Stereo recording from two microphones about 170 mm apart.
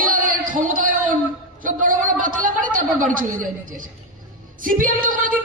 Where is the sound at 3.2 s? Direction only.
50° right (ahead or behind).